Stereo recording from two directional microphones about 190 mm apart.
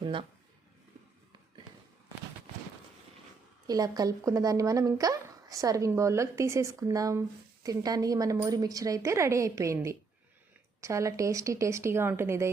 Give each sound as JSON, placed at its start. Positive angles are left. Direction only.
{"t": 0.0, "sound": "speech", "side_deg": -25}
{"t": 3.7, "sound": "speech", "side_deg": -20}